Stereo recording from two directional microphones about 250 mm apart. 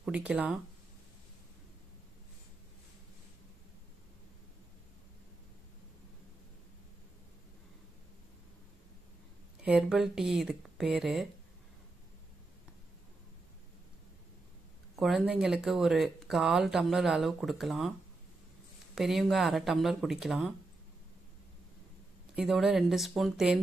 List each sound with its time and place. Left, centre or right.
0.0 s speech: centre
9.6 s speech: centre
15.0 s speech: centre
18.9 s speech: centre
22.3 s speech: centre